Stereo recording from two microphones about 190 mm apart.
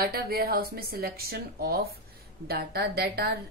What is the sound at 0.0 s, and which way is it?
A woman's voice, 55° right (ahead or behind).